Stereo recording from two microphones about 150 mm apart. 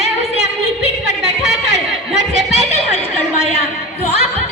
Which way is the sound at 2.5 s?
45° left (ahead or behind).